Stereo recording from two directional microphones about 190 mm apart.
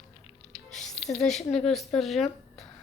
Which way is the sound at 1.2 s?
Centre (ahead or behind).